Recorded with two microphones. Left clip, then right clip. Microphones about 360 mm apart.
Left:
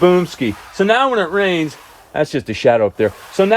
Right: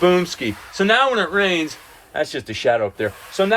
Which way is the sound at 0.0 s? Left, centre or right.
Centre.